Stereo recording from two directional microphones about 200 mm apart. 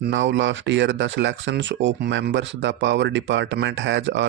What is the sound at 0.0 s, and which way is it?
Speech, 65° right (ahead or behind).